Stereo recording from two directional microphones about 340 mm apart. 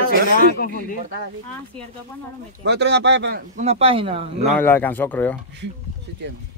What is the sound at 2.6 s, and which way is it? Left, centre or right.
Speech, right.